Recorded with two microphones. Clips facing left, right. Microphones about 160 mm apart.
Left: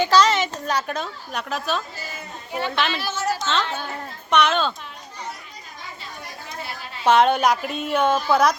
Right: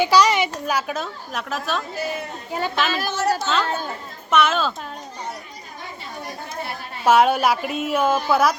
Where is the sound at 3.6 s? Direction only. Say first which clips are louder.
Right 4 dB; 45° right (ahead or behind).